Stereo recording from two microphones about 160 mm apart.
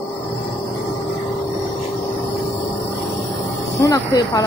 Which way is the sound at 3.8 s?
20° left (ahead or behind).